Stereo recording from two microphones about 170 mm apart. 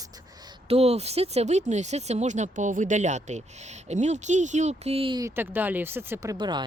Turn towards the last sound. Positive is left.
turn(degrees=-25)  # may be behind; listen again after turning